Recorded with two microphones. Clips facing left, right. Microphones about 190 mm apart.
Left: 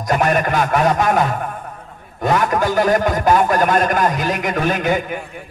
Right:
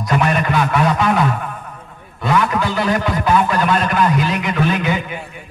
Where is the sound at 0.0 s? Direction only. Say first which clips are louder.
Left 1 dB; 45° left (ahead or behind).